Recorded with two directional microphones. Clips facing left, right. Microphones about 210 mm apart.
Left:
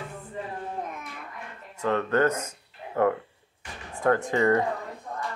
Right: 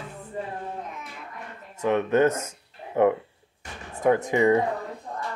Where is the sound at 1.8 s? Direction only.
20° right (ahead or behind).